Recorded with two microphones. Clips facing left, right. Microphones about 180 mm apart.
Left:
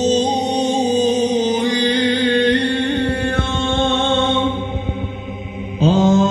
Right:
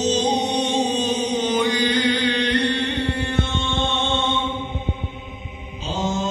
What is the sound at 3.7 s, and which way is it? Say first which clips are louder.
Mantra: left 7 dB; 50° left (ahead or behind).